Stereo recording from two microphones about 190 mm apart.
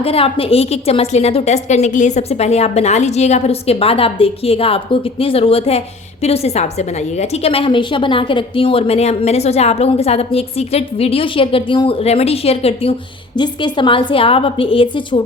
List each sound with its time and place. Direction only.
0.0 s a woman's voice: 30° left (ahead or behind)